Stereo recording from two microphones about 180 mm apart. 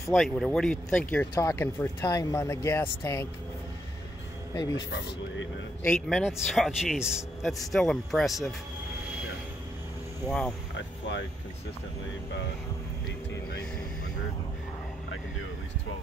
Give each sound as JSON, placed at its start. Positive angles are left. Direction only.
{"t": 0.1, "sound": "speech", "side_deg": 0}
{"t": 4.6, "sound": "speech", "side_deg": 20}
{"t": 5.9, "sound": "speech", "side_deg": 0}